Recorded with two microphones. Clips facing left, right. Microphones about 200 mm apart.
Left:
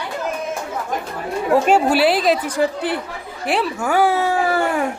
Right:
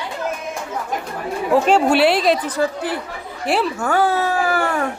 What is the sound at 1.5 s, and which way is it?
A woman's voice, 5° left (ahead or behind).